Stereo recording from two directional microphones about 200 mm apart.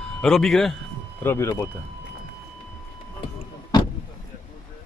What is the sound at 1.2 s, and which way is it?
Speech, 15° left (ahead or behind).